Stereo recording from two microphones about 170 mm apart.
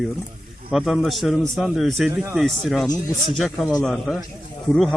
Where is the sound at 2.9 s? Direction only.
25° left (ahead or behind).